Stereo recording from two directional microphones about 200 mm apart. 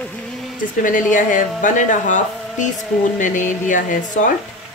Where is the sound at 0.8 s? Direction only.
40° left (ahead or behind).